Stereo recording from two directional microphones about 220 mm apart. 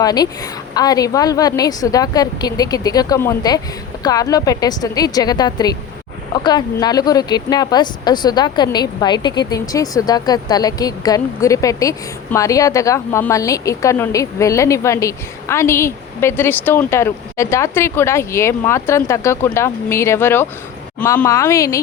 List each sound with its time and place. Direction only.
0.0 s a woman's voice: 15° left (ahead or behind)